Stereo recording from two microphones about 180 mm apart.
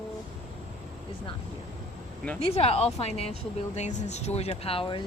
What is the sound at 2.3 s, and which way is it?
Speech, 35° left (ahead or behind).